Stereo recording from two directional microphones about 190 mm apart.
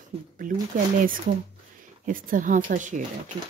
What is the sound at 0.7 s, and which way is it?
Speech, 45° right (ahead or behind).